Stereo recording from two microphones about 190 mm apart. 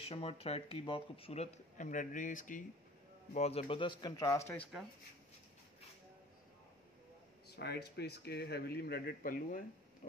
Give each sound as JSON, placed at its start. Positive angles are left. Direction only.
{"t": 0.1, "sound": "speech", "side_deg": 30}
{"t": 3.3, "sound": "speech", "side_deg": 30}
{"t": 7.4, "sound": "speech", "side_deg": 60}